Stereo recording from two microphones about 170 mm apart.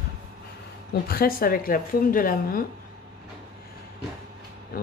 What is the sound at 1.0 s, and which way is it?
A woman's voice, 60° left (ahead or behind).